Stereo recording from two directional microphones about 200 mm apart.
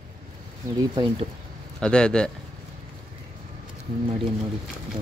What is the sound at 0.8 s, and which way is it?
Speech, 20° right (ahead or behind).